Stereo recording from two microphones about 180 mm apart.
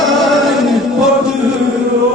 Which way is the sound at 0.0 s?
Centre (ahead or behind).